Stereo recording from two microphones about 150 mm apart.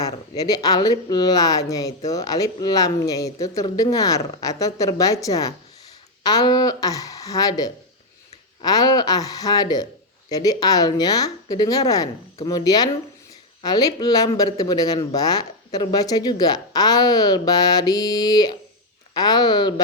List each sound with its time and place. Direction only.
0.0 s speech: 25° left (ahead or behind)